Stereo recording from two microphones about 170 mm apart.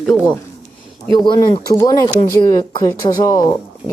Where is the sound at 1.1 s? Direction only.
25° left (ahead or behind).